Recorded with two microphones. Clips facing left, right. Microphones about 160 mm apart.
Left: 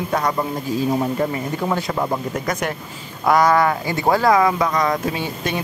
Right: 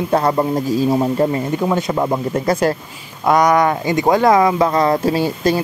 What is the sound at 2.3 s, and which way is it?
Speech, 30° right (ahead or behind).